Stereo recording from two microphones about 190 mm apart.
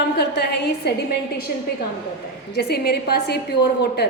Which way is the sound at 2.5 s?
60° left (ahead or behind).